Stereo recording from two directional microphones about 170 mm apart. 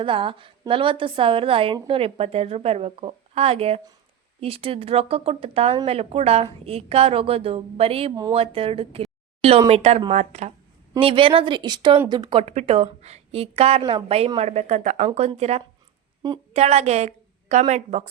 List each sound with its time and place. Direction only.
0.0 s a woman's voice: 30° right (ahead or behind)
11.0 s speech: 30° right (ahead or behind)
12.4 s a woman's voice: 40° right (ahead or behind)